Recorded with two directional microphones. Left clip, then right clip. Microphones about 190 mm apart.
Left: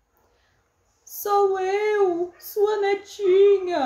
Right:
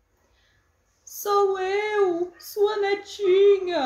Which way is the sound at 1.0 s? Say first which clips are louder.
Left 1 dB; 20° left (ahead or behind).